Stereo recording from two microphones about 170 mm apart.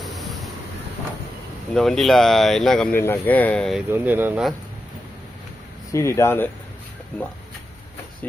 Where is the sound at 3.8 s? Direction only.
10° right (ahead or behind).